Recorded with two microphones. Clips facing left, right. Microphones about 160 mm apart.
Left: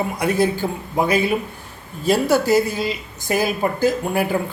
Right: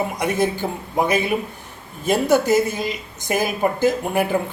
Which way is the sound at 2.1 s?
20° right (ahead or behind).